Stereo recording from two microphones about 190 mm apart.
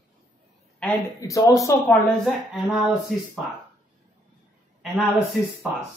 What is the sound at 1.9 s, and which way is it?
Speech, centre (ahead or behind).